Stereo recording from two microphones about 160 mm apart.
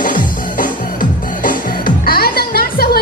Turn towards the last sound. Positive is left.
turn(degrees=75)  # may be behind; listen again after turning